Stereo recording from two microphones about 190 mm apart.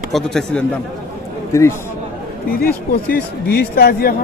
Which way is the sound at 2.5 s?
50° left (ahead or behind).